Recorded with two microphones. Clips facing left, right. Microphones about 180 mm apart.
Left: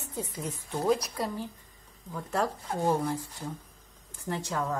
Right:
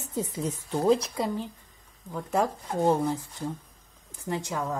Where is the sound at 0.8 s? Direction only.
25° right (ahead or behind).